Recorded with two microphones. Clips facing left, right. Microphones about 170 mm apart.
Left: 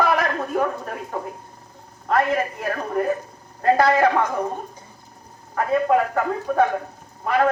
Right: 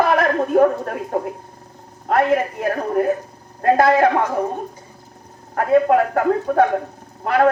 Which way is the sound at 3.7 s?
50° right (ahead or behind).